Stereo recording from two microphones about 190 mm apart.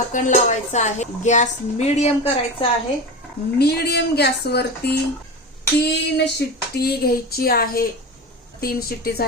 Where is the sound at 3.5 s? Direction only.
55° left (ahead or behind).